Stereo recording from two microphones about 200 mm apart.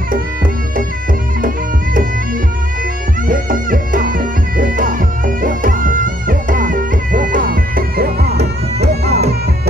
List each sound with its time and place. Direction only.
3.3 s music: 45° right (ahead or behind)